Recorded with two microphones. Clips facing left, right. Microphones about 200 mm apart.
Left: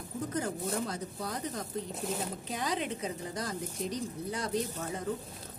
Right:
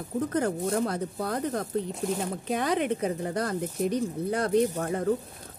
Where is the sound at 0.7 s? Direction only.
60° right (ahead or behind).